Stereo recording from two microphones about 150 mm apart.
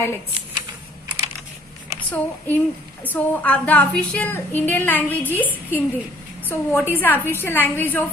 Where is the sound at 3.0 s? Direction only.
10° left (ahead or behind).